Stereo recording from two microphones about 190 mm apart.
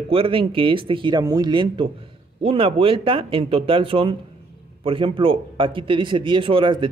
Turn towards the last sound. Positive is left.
turn(degrees=-25)  # may be behind; listen again after turning